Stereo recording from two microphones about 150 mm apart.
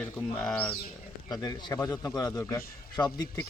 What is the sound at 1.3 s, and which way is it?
A man's voice, 25° left (ahead or behind).